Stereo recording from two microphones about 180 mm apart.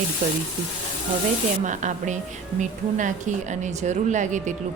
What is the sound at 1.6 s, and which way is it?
Speech, 45° right (ahead or behind).